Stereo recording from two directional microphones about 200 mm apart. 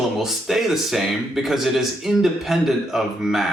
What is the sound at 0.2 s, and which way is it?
Speech, centre (ahead or behind).